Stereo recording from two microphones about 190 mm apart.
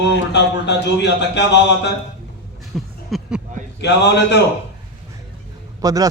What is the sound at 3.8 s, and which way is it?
Speech, 65° left (ahead or behind).